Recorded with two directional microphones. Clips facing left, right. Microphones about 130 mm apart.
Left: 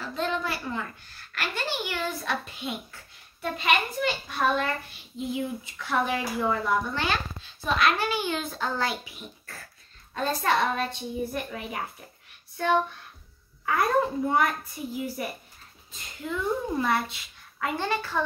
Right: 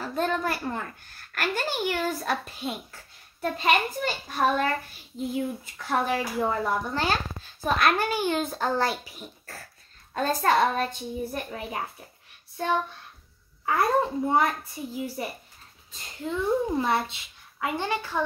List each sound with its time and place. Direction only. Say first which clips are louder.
0.0 s a child's voice: right 2 dB; 45° right (ahead or behind)
5.8 s a child's voice: right 1 dB; 40° right (ahead or behind)
13.7 s a woman's voice: right 1 dB; 30° right (ahead or behind)